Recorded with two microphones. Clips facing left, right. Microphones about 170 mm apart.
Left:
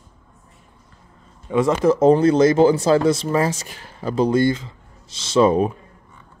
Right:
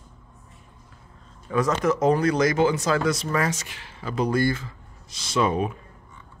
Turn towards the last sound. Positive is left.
turn(degrees=30)  # may be behind; listen again after turning